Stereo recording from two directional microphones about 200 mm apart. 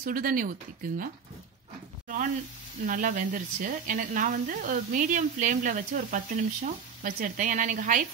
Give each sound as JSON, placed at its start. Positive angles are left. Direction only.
{"t": 0.0, "sound": "speech", "side_deg": -45}
{"t": 2.0, "sound": "speech", "side_deg": -40}